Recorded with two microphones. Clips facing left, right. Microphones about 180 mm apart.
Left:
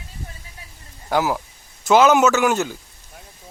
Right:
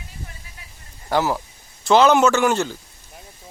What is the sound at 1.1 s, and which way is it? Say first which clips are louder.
Speech: even; 10° left (ahead or behind).